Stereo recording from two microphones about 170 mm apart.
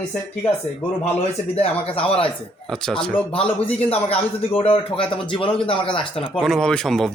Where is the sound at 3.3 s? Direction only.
35° left (ahead or behind).